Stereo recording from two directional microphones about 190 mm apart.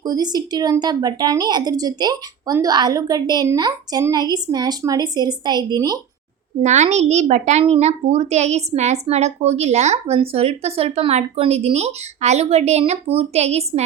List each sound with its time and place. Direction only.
0.0 s speech: 20° right (ahead or behind)
6.6 s speech: 40° right (ahead or behind)